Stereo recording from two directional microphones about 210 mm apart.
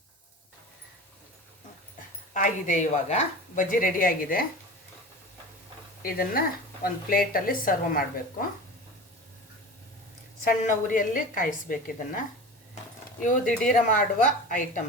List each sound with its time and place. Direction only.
2.3 s a woman's voice: 35° left (ahead or behind)
6.0 s a woman's voice: 45° left (ahead or behind)
10.4 s a woman's voice: 40° left (ahead or behind)
13.7 s a woman's voice: 40° left (ahead or behind)